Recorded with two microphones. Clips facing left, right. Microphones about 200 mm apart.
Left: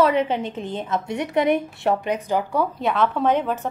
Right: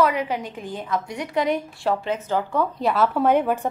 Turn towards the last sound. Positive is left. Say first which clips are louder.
# right 2 dB
turn(degrees=-10)  # may be behind; listen again after turning